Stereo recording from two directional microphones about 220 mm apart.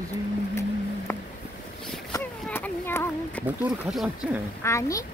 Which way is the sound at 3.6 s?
5° right (ahead or behind).